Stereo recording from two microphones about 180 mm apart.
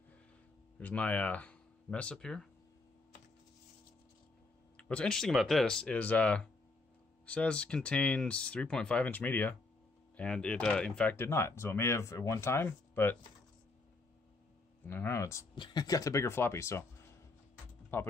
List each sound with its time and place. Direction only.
0.7 s speech: 10° left (ahead or behind)
4.7 s speech: 5° left (ahead or behind)
14.9 s speech: 15° left (ahead or behind)